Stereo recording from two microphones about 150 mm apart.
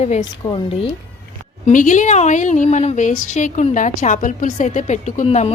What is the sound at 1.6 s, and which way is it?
Speech, 60° left (ahead or behind).